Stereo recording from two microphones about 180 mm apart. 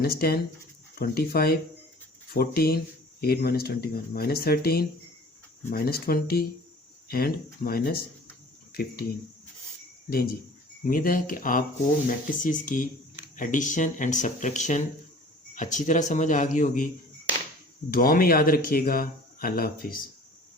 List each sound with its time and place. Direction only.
0.0 s speech: 60° left (ahead or behind)
10.8 s speech: 50° left (ahead or behind)
17.9 s speech: 55° left (ahead or behind)